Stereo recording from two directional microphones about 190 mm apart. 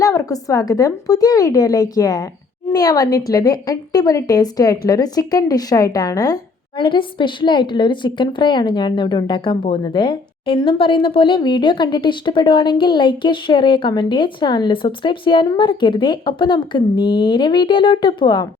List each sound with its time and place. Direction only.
0.0 s speech: 20° left (ahead or behind)